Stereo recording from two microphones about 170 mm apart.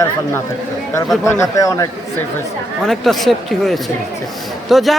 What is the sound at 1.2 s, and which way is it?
Speech, 20° left (ahead or behind).